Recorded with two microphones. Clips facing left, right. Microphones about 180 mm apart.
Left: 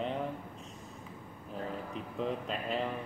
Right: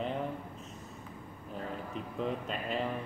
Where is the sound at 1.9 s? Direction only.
Centre (ahead or behind).